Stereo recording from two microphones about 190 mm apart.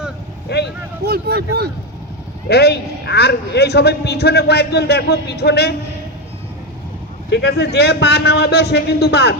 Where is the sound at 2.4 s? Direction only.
55° left (ahead or behind).